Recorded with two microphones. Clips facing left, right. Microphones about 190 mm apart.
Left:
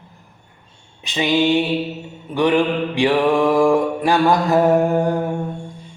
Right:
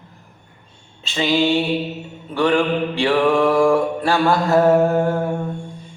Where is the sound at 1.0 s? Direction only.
15° left (ahead or behind).